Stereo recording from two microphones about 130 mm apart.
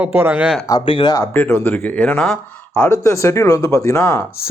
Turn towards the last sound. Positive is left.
turn(degrees=20)  # may be behind; listen again after turning